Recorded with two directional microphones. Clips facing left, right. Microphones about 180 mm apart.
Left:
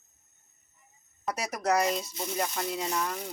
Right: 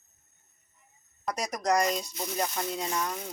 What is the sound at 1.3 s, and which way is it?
Speech, 5° left (ahead or behind).